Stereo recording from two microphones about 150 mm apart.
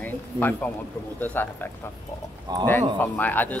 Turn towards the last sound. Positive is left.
turn(degrees=10)  # may be behind; listen again after turning